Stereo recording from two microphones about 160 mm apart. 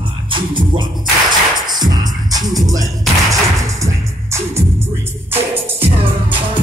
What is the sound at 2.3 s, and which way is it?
Music, 25° right (ahead or behind).